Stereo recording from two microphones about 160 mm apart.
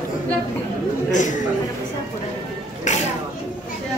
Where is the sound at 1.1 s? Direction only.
50° left (ahead or behind).